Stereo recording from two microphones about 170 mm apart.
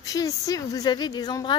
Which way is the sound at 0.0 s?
20° left (ahead or behind).